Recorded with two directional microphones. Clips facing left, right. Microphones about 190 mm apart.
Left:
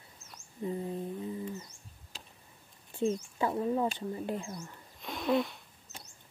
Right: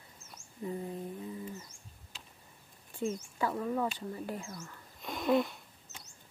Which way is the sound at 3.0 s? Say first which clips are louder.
Left 3 dB; 25° left (ahead or behind).